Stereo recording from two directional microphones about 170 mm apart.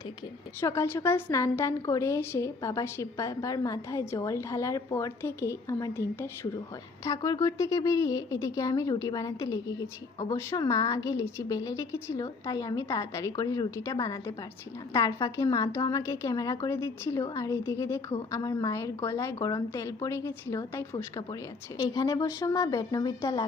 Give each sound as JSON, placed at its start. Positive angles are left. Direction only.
{"t": 0.6, "sound": "a woman's voice", "side_deg": 15}